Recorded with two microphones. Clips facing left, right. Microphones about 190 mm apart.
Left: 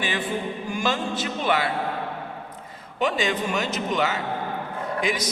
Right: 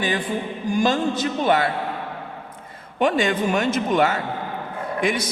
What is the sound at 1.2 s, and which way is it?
Speech, 45° right (ahead or behind).